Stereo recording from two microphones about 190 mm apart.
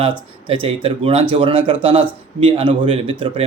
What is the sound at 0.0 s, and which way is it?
Speech, 25° right (ahead or behind).